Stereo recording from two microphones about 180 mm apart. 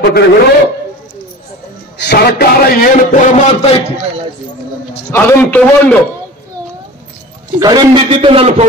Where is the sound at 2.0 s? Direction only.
70° left (ahead or behind); by 3.8 s 35° left (ahead or behind).